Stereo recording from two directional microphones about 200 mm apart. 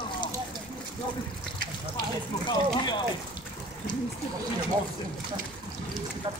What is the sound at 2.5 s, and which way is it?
Speech, 20° left (ahead or behind).